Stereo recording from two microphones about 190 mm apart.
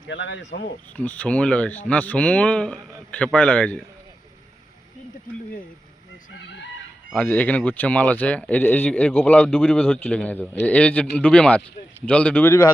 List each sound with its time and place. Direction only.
0.0 s speech: 70° left (ahead or behind)
0.9 s speech: 10° left (ahead or behind)
6.3 s speech: 70° left (ahead or behind)
7.1 s speech: 10° left (ahead or behind)